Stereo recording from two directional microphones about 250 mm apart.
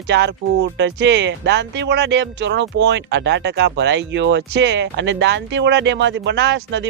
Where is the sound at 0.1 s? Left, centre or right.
Right.